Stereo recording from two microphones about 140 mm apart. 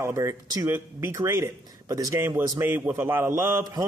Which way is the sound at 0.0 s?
20° right (ahead or behind).